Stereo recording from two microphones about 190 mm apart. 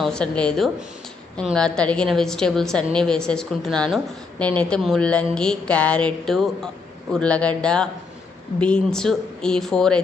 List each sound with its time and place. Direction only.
0.0 s a woman's voice: 5° left (ahead or behind)